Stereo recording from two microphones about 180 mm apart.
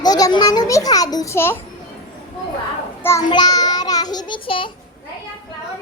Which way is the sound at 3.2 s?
25° left (ahead or behind).